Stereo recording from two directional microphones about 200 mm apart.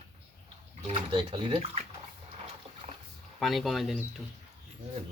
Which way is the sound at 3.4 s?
Centre (ahead or behind).